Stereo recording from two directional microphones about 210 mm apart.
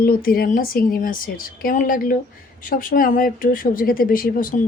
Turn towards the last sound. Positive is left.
turn(degrees=40)  # may be behind; listen again after turning